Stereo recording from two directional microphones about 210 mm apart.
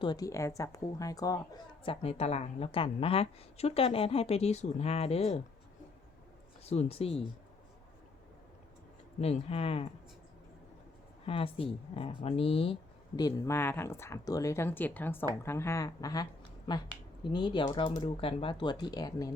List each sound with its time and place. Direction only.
0.0 s speech: 20° left (ahead or behind)
1.8 s speech: 25° left (ahead or behind)
6.7 s speech: 30° left (ahead or behind)
9.2 s speech: 30° left (ahead or behind)
11.3 s speech: 25° left (ahead or behind)